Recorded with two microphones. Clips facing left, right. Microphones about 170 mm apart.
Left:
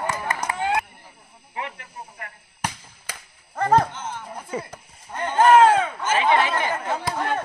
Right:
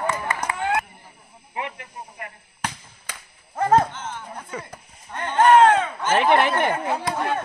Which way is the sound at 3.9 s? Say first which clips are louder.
Left 1 dB; 15° left (ahead or behind).